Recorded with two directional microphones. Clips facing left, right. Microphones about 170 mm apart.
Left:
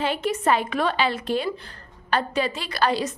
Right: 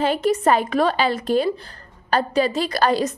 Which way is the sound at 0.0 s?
40° right (ahead or behind).